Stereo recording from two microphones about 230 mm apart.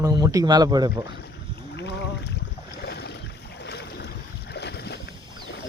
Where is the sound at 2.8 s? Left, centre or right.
Left.